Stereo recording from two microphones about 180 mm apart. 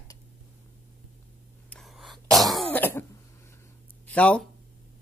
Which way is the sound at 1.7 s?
Centre (ahead or behind).